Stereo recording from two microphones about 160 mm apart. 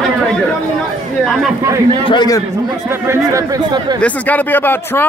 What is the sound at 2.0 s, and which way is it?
Speech, 25° left (ahead or behind).